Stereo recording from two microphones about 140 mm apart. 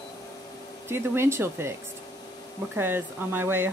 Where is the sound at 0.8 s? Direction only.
20° right (ahead or behind).